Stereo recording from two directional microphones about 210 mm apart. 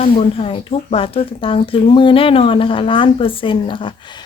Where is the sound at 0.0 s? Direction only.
25° left (ahead or behind).